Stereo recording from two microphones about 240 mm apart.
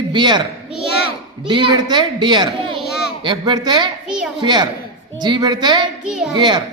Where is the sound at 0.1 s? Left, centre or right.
Centre.